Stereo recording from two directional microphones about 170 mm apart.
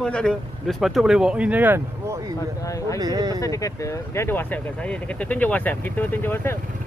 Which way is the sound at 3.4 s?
20° left (ahead or behind).